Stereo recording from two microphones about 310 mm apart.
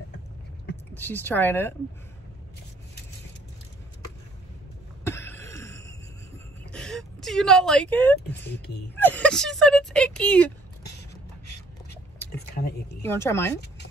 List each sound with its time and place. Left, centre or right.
0.9 s a woman's voice: centre
5.0 s a sound: centre
8.5 s speech: left
8.9 s speech: centre
13.0 s a woman's voice: centre